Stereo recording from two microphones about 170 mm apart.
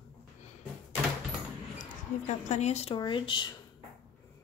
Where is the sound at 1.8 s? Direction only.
45° left (ahead or behind).